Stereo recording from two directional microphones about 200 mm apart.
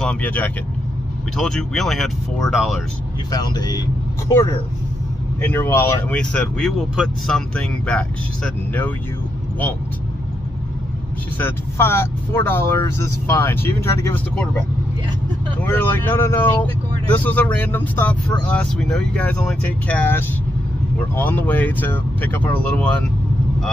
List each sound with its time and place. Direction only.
0.0 s speech: 5° left (ahead or behind)
3.3 s speech: 20° left (ahead or behind); by 8.0 s 5° left (ahead or behind)
11.3 s speech: 10° left (ahead or behind)
15.6 s speech: 10° left (ahead or behind)